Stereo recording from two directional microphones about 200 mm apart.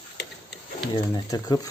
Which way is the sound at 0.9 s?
20° left (ahead or behind).